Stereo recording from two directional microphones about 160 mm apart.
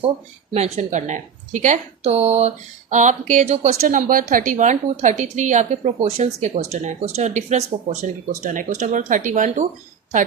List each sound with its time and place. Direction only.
0.5 s a woman's voice: 45° right (ahead or behind)